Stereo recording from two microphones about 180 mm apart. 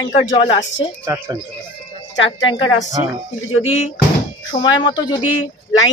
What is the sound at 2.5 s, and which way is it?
Speech, 30° left (ahead or behind).